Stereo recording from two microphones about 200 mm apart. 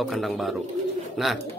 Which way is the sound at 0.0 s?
Centre (ahead or behind).